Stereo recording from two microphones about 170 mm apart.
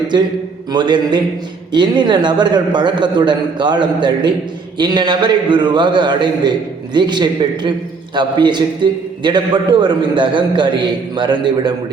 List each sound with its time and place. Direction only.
0.7 s a man's voice: 25° right (ahead or behind)